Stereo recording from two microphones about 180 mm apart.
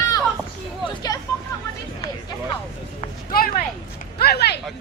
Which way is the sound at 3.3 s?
55° left (ahead or behind).